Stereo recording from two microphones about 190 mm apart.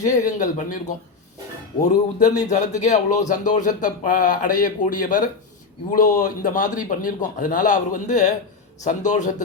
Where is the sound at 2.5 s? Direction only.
40° left (ahead or behind).